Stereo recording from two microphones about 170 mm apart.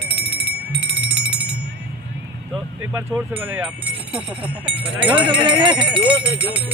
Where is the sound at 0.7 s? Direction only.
5° right (ahead or behind).